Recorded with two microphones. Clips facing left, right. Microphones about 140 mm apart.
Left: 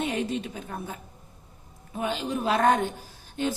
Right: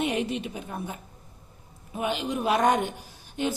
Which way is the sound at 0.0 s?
15° right (ahead or behind).